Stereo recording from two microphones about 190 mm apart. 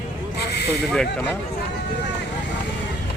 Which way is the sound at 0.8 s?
Centre (ahead or behind).